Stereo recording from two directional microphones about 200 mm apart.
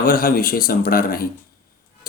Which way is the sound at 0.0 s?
45° left (ahead or behind).